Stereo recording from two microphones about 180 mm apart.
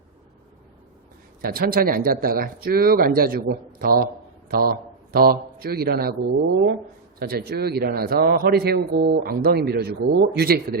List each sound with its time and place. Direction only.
1.4 s speech: 55° right (ahead or behind)
7.2 s speech: 55° right (ahead or behind)